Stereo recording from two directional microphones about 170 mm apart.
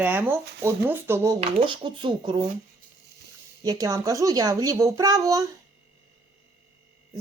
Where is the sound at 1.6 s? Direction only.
30° right (ahead or behind).